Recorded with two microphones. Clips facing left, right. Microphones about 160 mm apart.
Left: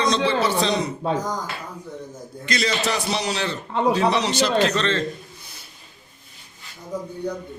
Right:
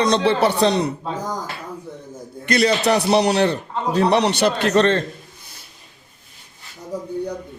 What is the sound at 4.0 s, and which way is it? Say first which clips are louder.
A man's voice: right 3 dB; 60° right (ahead or behind).